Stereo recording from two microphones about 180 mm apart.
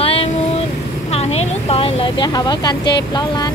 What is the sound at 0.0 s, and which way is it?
Vehicle, 30° left (ahead or behind).